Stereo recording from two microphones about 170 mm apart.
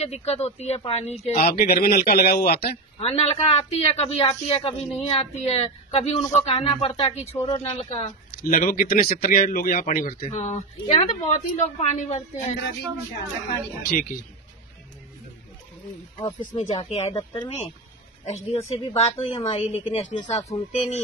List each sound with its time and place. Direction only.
0.0 s a woman's voice: 40° left (ahead or behind)
1.4 s a man's voice: 60° left (ahead or behind)
3.0 s a woman's voice: 35° left (ahead or behind)
8.5 s a man's voice: 55° left (ahead or behind)
10.3 s a woman's voice: 40° left (ahead or behind)
13.8 s a man's voice: 55° left (ahead or behind)
16.5 s a woman's voice: 40° left (ahead or behind)